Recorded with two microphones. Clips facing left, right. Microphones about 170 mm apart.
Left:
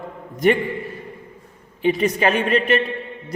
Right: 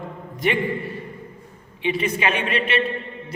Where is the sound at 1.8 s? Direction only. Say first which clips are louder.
Left 5 dB; 40° left (ahead or behind).